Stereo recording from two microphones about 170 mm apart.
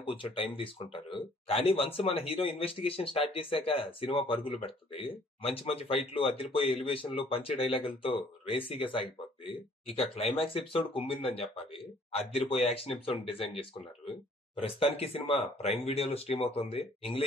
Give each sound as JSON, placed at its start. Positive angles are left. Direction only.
{"t": 0.0, "sound": "speech", "side_deg": 30}
{"t": 14.6, "sound": "speech", "side_deg": 35}